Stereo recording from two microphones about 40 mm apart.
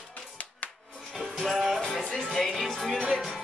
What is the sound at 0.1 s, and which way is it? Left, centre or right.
Music, left.